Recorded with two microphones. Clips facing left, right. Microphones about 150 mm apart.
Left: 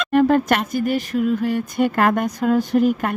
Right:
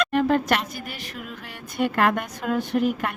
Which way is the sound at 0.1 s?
45° left (ahead or behind).